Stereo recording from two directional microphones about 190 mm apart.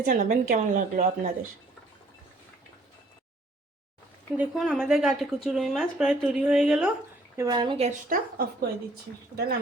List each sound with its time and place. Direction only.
0.0 s speech: 40° right (ahead or behind)
4.4 s speech: centre (ahead or behind)
7.3 s speech: 20° right (ahead or behind)
9.3 s speech: 55° right (ahead or behind)